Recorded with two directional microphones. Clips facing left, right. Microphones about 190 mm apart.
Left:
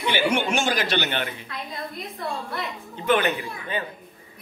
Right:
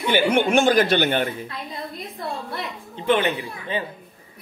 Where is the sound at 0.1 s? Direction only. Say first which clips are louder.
Right 5 dB; 50° right (ahead or behind).